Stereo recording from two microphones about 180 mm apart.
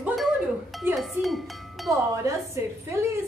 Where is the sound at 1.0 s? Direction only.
Centre (ahead or behind).